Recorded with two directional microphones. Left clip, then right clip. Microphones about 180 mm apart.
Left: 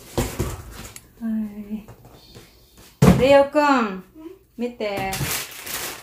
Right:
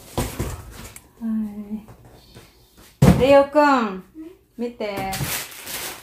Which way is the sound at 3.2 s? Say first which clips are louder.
Right 1 dB; 10° right (ahead or behind).